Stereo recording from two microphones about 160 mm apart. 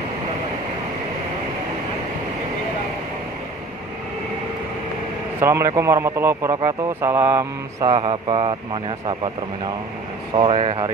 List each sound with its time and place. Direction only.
5.4 s speech: 20° right (ahead or behind)
7.9 s a man's voice: 30° right (ahead or behind)
10.3 s a man's voice: 35° right (ahead or behind)